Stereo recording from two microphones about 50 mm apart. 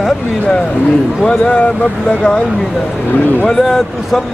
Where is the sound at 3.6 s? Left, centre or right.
Centre.